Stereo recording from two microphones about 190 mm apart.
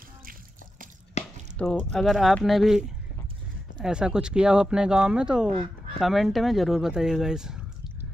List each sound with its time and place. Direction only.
1.2 s a sound: 35° left (ahead or behind)
1.6 s speech: 5° left (ahead or behind)
3.8 s speech: 5° right (ahead or behind)
5.5 s fowl: 30° right (ahead or behind)
5.9 s speech: centre (ahead or behind)